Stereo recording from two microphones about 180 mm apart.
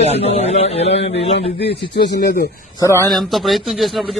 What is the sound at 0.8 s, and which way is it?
Speech, 75° left (ahead or behind).